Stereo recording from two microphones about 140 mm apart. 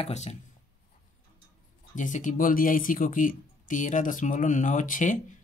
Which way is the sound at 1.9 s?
65° left (ahead or behind).